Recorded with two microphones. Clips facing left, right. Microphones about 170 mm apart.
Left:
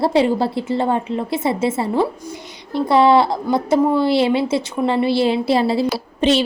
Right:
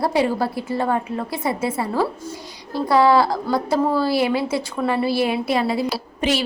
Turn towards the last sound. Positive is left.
turn(degrees=25)  # may be behind; listen again after turning